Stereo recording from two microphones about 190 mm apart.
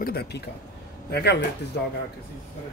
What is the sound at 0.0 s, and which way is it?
Speech, 55° left (ahead or behind).